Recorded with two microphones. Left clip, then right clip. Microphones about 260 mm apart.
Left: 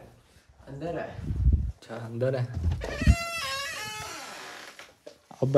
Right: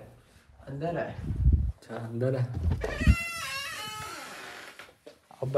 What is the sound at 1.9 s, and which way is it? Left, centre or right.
Speech, centre.